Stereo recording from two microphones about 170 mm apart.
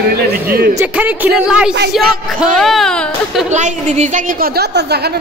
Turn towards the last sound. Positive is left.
turn(degrees=-45)  # may be behind; listen again after turning